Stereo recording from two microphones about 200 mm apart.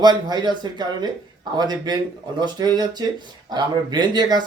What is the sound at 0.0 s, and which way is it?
Speech, 20° right (ahead or behind).